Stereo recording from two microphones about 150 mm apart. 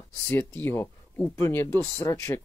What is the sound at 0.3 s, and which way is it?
Speech, 15° left (ahead or behind).